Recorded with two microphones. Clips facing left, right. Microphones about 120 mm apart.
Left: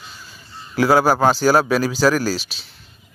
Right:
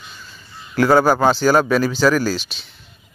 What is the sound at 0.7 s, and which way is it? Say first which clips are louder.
Speech: right 1 dB; 5° left (ahead or behind).